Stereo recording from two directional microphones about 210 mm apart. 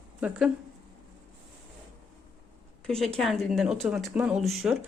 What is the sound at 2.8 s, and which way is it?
A woman's voice, centre (ahead or behind).